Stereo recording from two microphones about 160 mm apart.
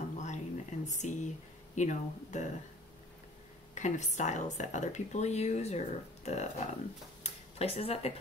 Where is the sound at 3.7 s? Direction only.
50° left (ahead or behind).